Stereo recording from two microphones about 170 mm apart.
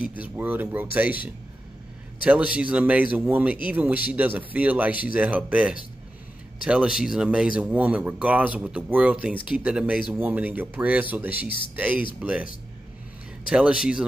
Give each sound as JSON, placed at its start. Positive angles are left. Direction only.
{"t": 0.2, "sound": "speech", "side_deg": -10}
{"t": 2.2, "sound": "speech", "side_deg": -5}
{"t": 13.5, "sound": "speech", "side_deg": -5}